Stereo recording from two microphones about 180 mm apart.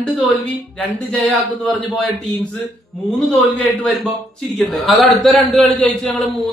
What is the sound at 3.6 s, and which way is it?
A man's voice, centre (ahead or behind).